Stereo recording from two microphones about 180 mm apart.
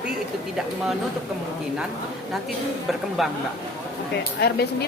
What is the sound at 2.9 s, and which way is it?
Speech, centre (ahead or behind).